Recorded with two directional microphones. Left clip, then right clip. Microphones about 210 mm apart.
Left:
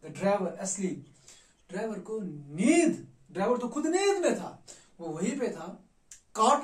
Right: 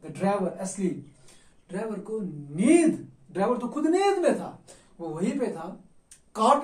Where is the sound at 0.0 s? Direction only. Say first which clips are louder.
Right 1 dB; centre (ahead or behind).